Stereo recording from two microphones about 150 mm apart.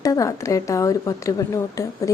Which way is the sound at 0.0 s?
20° left (ahead or behind).